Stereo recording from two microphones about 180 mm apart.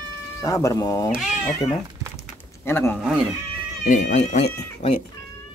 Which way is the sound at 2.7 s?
15° left (ahead or behind).